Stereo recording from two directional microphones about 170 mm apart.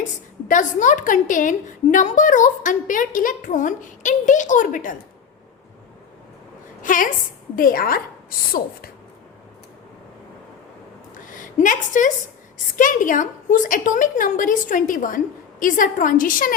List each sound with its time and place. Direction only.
0.0 s a woman's voice: 50° left (ahead or behind)
6.8 s a woman's voice: 50° left (ahead or behind)
11.1 s a sound: 50° left (ahead or behind)
12.7 s a woman's voice: 50° left (ahead or behind)